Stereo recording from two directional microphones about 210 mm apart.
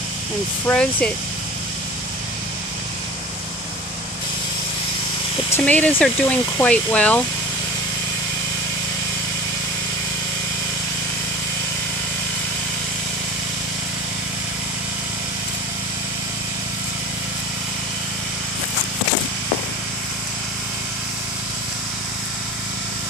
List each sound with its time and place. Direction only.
0.7 s speech: 5° left (ahead or behind)
5.7 s speech: 5° left (ahead or behind)